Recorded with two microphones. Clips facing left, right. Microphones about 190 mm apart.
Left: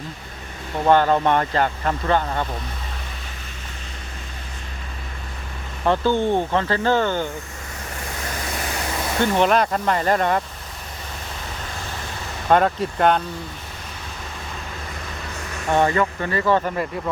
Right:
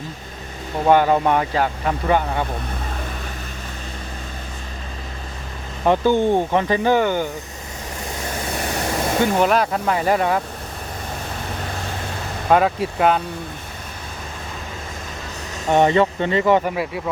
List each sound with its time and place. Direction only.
0.9 s speech: 10° right (ahead or behind)
5.8 s speech: 15° right (ahead or behind)
9.2 s speech: 5° right (ahead or behind)
12.5 s speech: 5° right (ahead or behind)
15.5 s speech: 20° right (ahead or behind)